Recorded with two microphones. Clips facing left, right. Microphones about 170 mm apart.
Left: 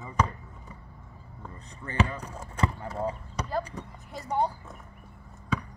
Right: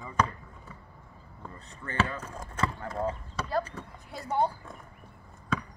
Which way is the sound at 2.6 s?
15° left (ahead or behind).